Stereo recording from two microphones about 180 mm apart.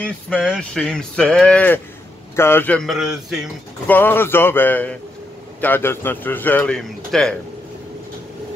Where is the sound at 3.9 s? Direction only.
10° left (ahead or behind).